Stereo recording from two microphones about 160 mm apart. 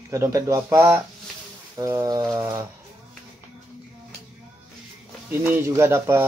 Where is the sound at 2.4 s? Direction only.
20° right (ahead or behind).